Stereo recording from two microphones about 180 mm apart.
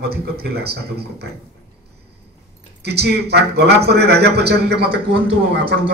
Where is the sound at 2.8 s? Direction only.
65° right (ahead or behind).